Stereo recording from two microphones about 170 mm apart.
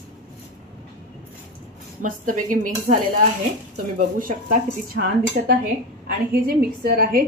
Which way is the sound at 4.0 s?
55° right (ahead or behind).